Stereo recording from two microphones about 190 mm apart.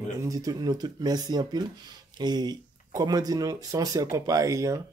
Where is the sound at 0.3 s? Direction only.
20° right (ahead or behind).